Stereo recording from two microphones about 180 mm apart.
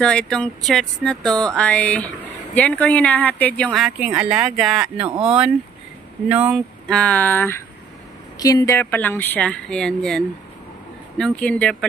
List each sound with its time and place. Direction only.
0.0 s a sound: 5° left (ahead or behind)
2.2 s speech: 10° left (ahead or behind)
4.2 s a sound: 5° right (ahead or behind)
5.0 s speech: 30° right (ahead or behind)
6.2 s speech: 5° right (ahead or behind)
6.9 s speech: 5° left (ahead or behind)